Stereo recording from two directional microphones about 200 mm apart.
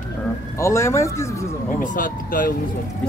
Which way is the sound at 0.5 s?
15° left (ahead or behind).